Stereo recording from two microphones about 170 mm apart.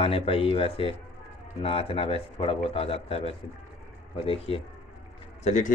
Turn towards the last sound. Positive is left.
turn(degrees=45)  # may be behind; listen again after turning